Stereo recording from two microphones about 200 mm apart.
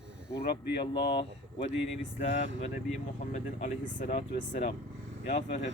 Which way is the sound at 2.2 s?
40° left (ahead or behind).